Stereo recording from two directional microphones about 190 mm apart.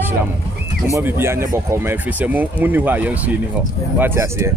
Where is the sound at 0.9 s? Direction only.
15° right (ahead or behind).